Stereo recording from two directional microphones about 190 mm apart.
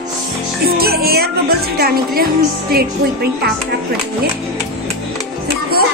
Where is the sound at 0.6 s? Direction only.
55° right (ahead or behind).